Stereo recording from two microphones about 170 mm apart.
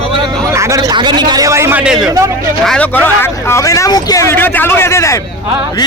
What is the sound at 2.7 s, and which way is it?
A man's voice, 10° left (ahead or behind).